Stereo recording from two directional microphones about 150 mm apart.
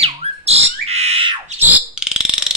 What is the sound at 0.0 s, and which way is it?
Squawk, 40° right (ahead or behind).